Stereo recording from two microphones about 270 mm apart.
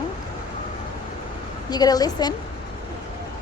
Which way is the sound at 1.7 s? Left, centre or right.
Centre.